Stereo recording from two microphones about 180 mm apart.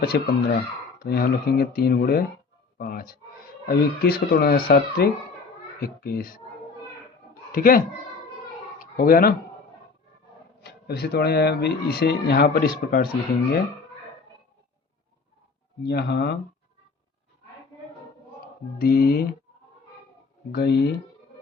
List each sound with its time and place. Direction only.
0.1 s a child's voice: 60° left (ahead or behind)
7.5 s a child's voice: 50° left (ahead or behind)
8.8 s a sound: 50° left (ahead or behind)
10.6 s speech: 60° left (ahead or behind)
15.9 s speech: 65° left (ahead or behind)
18.3 s speech: 55° left (ahead or behind)
20.5 s speech: 60° left (ahead or behind)